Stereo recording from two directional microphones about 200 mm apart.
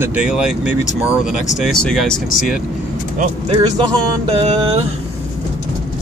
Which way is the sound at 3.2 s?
30° right (ahead or behind).